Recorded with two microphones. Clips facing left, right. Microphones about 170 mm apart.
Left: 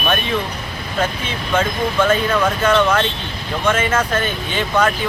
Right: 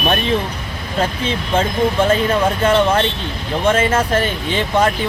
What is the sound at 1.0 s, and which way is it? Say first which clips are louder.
Speech: right 2 dB; 30° right (ahead or behind).